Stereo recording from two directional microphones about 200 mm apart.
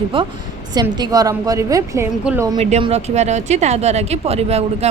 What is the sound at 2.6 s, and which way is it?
Speech, 35° right (ahead or behind).